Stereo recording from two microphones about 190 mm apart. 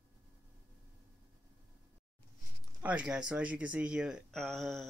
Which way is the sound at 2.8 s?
5° right (ahead or behind).